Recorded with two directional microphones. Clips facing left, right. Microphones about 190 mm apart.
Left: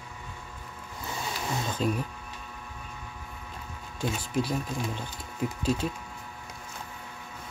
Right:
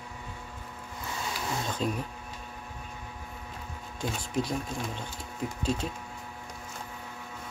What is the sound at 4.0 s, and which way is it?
Speech, 5° left (ahead or behind).